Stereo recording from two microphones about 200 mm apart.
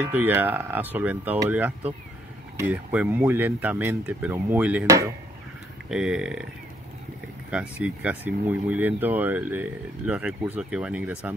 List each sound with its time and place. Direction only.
0.1 s speech: 10° right (ahead or behind)
5.9 s speech: 5° right (ahead or behind)
7.8 s speech: 5° right (ahead or behind)